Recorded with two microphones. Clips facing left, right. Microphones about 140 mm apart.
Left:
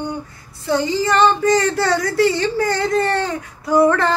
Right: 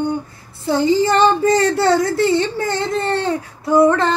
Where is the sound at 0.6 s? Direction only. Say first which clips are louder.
Right 3 dB; 30° right (ahead or behind).